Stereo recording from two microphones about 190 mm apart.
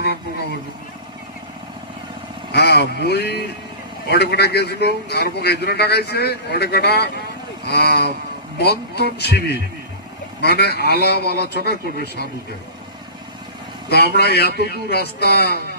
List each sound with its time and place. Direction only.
2.5 s a man's voice: 60° left (ahead or behind)
13.8 s a man's voice: 55° left (ahead or behind)